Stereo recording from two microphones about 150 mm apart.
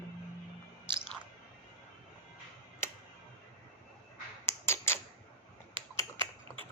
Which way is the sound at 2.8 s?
15° left (ahead or behind).